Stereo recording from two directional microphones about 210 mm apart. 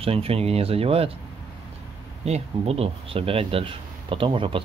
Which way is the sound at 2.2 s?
30° right (ahead or behind).